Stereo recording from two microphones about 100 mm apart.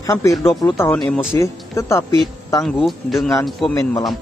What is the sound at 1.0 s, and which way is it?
Speech, 5° left (ahead or behind).